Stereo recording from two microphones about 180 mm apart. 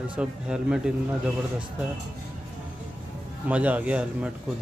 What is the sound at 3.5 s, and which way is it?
Speech, 10° right (ahead or behind).